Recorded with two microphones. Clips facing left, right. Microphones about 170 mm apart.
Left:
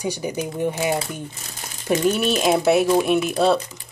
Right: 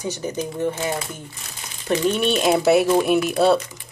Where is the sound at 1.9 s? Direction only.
5° left (ahead or behind).